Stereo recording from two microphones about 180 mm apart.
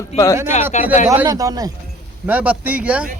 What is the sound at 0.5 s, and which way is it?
Speech, 40° left (ahead or behind).